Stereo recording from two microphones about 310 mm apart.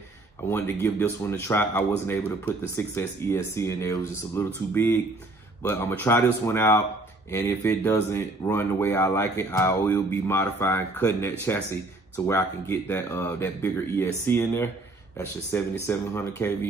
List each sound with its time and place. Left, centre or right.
0.4 s speech: centre
5.6 s speech: centre